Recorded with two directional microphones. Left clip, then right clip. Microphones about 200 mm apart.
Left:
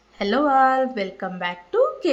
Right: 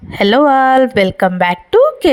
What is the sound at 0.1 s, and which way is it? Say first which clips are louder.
A woman's voice: right 10 dB; 50° right (ahead or behind).